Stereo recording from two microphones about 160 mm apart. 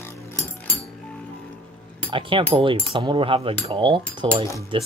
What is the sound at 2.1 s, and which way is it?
Speech, 35° right (ahead or behind).